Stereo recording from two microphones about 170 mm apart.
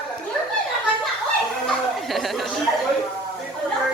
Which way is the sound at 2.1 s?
Centre (ahead or behind).